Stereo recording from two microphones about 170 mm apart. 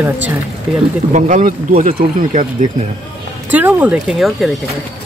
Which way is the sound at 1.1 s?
50° right (ahead or behind).